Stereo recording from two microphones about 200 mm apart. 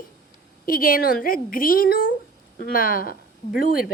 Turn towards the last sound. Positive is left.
turn(degrees=45)  # may be behind; listen again after turning